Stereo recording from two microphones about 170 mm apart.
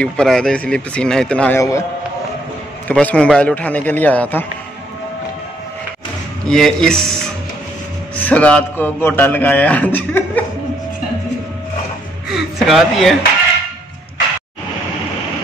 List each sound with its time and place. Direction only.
0.0 s speech: 5° left (ahead or behind)
1.6 s a man's voice: 20° left (ahead or behind)
2.9 s a man's voice: 10° left (ahead or behind)
6.4 s speech: 5° left (ahead or behind)
8.3 s a man's voice: 5° left (ahead or behind)
12.3 s a sound: centre (ahead or behind)